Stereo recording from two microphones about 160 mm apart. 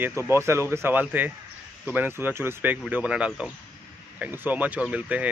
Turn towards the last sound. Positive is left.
turn(degrees=-10)  # may be behind; listen again after turning